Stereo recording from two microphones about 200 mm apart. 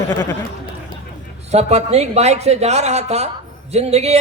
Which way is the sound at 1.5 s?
35° right (ahead or behind).